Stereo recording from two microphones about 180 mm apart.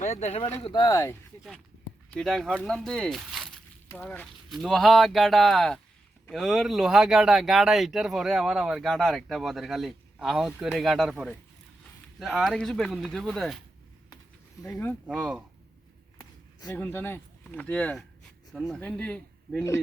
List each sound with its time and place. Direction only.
0.0 s speech: 40° left (ahead or behind)
0.6 s speech: 25° left (ahead or behind)
2.0 s speech: centre (ahead or behind)
14.7 s speech: 10° left (ahead or behind)
15.0 s speech: centre (ahead or behind)
16.1 s a sound: 20° left (ahead or behind)
16.7 s speech: 10° left (ahead or behind)